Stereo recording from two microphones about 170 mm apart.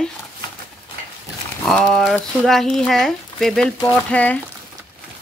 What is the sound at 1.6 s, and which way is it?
Speech, 5° left (ahead or behind).